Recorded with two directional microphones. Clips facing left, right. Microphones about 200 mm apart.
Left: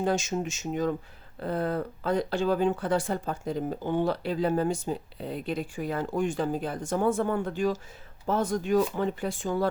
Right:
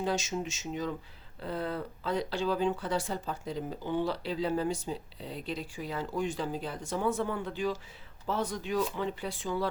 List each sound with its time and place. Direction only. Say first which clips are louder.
0.0 s speech: left 4 dB; 50° left (ahead or behind)